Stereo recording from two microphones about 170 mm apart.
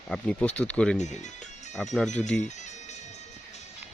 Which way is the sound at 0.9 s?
45° left (ahead or behind).